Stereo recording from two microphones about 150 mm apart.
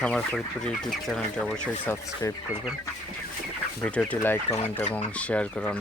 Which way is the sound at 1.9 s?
20° left (ahead or behind).